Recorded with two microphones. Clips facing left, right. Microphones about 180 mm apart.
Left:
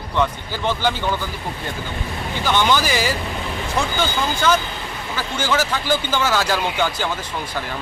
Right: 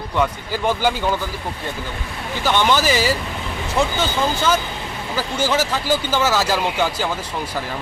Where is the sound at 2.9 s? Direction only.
35° right (ahead or behind).